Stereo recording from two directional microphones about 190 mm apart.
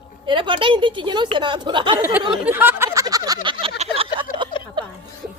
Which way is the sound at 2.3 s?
10° right (ahead or behind).